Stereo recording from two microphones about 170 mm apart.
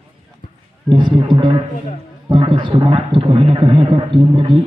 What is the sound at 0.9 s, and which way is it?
Music, 30° right (ahead or behind).